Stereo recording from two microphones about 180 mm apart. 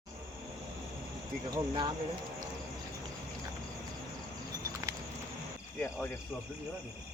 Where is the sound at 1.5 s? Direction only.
25° right (ahead or behind).